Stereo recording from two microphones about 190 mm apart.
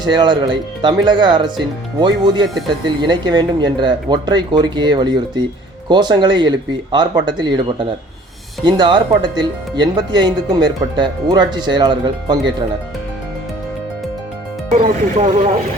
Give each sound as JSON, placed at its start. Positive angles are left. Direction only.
{"t": 0.0, "sound": "speech", "side_deg": -25}
{"t": 14.7, "sound": "speech", "side_deg": -40}